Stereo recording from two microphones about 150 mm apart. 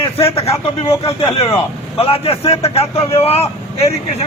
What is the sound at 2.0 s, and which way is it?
A man's voice, 40° left (ahead or behind).